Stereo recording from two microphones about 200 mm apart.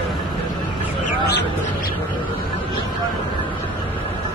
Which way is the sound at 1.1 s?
55° left (ahead or behind).